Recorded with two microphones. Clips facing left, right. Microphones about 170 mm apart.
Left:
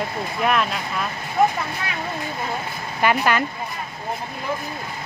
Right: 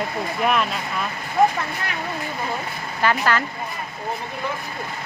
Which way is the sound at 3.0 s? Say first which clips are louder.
Left 1 dB; 15° left (ahead or behind).